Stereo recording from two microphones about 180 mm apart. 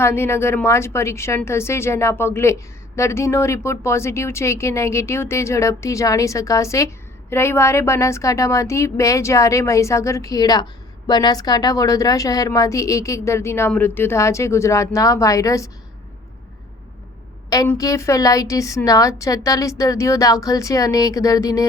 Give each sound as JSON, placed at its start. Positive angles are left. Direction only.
{"t": 0.0, "sound": "a woman's voice", "side_deg": 15}
{"t": 17.7, "sound": "a woman's voice", "side_deg": 20}